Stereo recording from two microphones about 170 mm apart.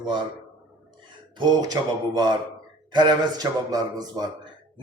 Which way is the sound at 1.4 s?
25° right (ahead or behind).